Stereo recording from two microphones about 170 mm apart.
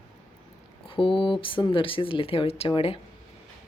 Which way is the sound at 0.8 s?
30° left (ahead or behind).